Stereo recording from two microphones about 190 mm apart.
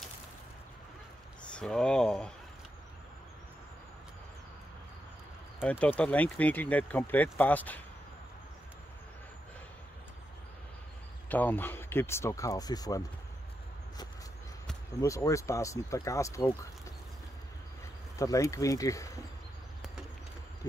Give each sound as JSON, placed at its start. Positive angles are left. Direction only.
{"t": 1.5, "sound": "speech", "side_deg": 5}
{"t": 5.6, "sound": "speech", "side_deg": 5}
{"t": 11.2, "sound": "speech", "side_deg": 10}
{"t": 15.0, "sound": "speech", "side_deg": 15}
{"t": 18.1, "sound": "speech", "side_deg": 15}